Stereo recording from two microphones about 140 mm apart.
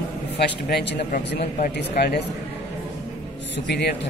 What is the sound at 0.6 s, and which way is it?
A man's voice, 80° left.